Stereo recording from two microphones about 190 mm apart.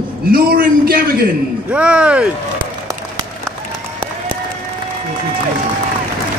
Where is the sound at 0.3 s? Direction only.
50° right (ahead or behind).